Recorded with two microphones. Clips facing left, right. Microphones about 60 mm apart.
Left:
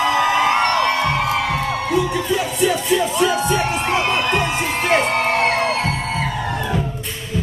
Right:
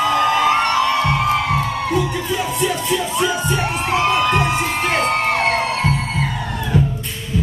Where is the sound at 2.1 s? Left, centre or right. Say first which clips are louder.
Left 1 dB; centre.